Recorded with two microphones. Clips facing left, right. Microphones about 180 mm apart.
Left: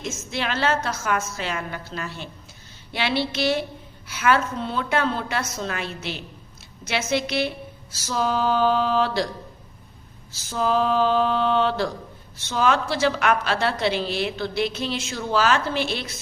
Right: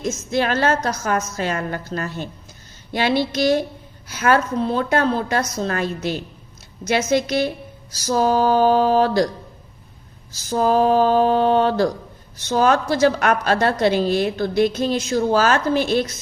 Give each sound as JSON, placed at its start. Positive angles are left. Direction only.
{"t": 0.0, "sound": "a woman's voice", "side_deg": -40}
{"t": 10.3, "sound": "a woman's voice", "side_deg": -40}